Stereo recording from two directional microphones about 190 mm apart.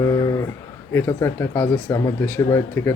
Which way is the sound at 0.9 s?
15° left (ahead or behind).